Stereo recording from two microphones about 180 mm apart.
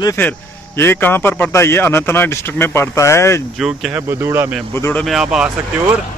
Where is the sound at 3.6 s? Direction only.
5° right (ahead or behind).